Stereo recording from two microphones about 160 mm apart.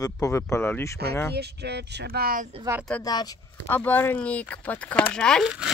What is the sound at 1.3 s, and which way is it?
Speech, 90° right.